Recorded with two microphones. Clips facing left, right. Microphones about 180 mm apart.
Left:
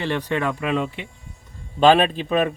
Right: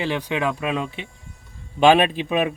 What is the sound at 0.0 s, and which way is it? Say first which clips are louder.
Speech: even; 10° right (ahead or behind).